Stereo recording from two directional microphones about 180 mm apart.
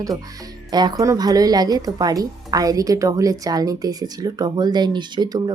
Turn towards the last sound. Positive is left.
turn(degrees=-25)  # may be behind; listen again after turning